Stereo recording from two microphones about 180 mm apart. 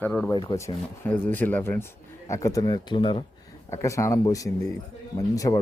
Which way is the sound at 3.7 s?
15° left (ahead or behind).